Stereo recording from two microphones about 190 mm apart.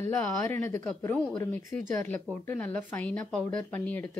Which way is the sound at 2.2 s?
5° left (ahead or behind).